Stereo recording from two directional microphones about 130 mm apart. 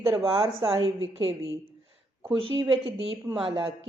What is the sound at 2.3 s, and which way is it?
Speech, 40° right (ahead or behind).